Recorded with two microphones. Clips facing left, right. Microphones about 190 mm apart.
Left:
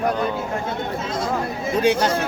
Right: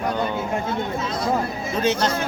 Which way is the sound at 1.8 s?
15° left (ahead or behind).